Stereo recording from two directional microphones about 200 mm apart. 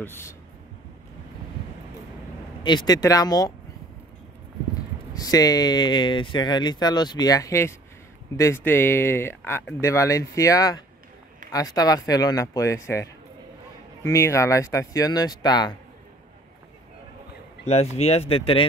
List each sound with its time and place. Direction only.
0.0 s speech: 10° left (ahead or behind)
2.6 s speech: 20° left (ahead or behind)
5.1 s speech: 20° left (ahead or behind)
17.6 s speech: 30° left (ahead or behind)